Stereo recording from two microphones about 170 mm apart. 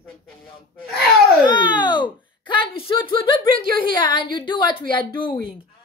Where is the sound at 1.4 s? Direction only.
25° left (ahead or behind).